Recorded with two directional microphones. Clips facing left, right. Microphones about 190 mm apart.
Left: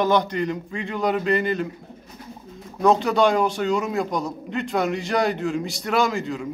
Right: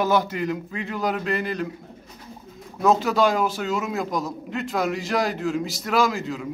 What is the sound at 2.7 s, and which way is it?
A man's voice, 5° right (ahead or behind).